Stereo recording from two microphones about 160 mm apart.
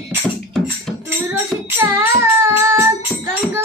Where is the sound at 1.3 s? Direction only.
15° right (ahead or behind).